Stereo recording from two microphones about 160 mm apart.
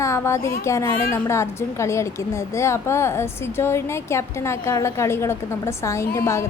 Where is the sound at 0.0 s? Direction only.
15° left (ahead or behind).